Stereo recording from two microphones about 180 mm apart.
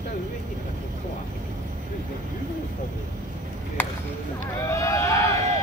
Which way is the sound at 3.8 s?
10° left (ahead or behind).